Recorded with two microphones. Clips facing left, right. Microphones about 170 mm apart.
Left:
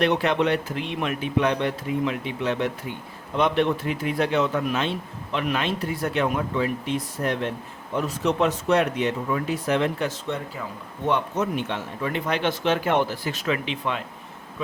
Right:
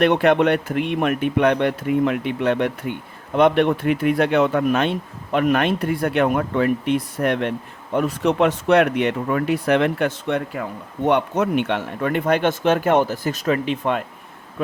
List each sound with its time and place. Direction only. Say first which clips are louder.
0.0 s speech: right 6 dB; 55° right (ahead or behind)